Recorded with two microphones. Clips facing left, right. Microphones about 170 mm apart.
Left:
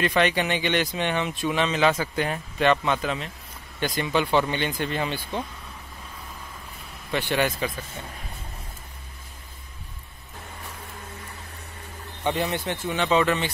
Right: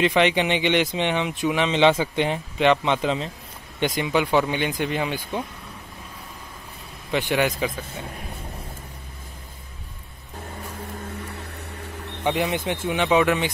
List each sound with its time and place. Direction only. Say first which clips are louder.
0.0 s speech: right 3 dB; 20° right (ahead or behind)
7.1 s speech: right 2 dB; 15° right (ahead or behind)
12.2 s speech: right 2 dB; 15° right (ahead or behind)